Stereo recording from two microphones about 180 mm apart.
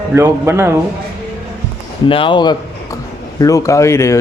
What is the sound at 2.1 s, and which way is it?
Speech, 30° left (ahead or behind).